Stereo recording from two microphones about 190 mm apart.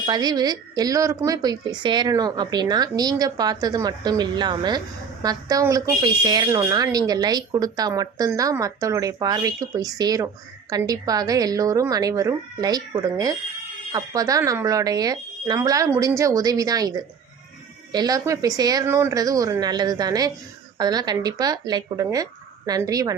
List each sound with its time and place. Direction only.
0.0 s speech: 20° right (ahead or behind)